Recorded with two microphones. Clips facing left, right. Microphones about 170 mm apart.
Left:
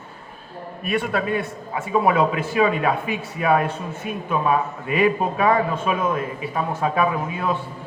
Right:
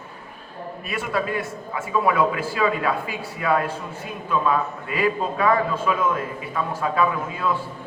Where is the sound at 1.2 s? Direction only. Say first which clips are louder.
Left 3 dB; 25° left (ahead or behind).